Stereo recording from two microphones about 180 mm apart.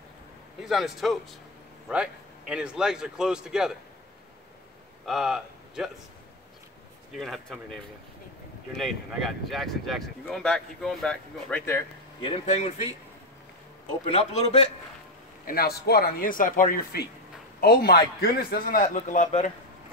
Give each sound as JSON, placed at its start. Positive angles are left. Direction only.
{"t": 0.7, "sound": "speech", "side_deg": 0}
{"t": 5.0, "sound": "speech", "side_deg": 0}
{"t": 7.2, "sound": "speech", "side_deg": 0}
{"t": 8.7, "sound": "speech", "side_deg": 0}
{"t": 12.2, "sound": "a man's voice", "side_deg": 30}
{"t": 14.0, "sound": "a man's voice", "side_deg": 35}
{"t": 15.4, "sound": "a man's voice", "side_deg": 60}